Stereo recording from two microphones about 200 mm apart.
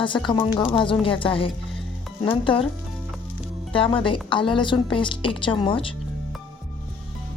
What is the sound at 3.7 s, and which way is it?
A woman's voice, 25° left (ahead or behind).